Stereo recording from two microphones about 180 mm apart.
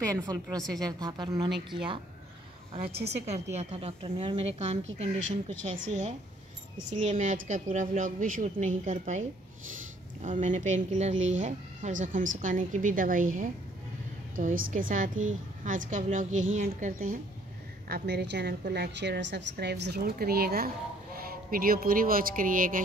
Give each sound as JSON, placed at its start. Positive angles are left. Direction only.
{"t": 0.0, "sound": "a woman's voice", "side_deg": -20}
{"t": 2.9, "sound": "a woman's voice", "side_deg": -65}
{"t": 3.5, "sound": "a woman's voice", "side_deg": -35}
{"t": 5.9, "sound": "a woman's voice", "side_deg": -40}
{"t": 10.2, "sound": "speech", "side_deg": -45}
{"t": 17.8, "sound": "a woman's voice", "side_deg": -60}
{"t": 19.5, "sound": "a woman's voice", "side_deg": -65}